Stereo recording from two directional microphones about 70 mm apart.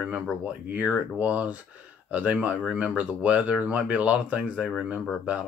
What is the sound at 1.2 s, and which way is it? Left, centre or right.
Speech, centre.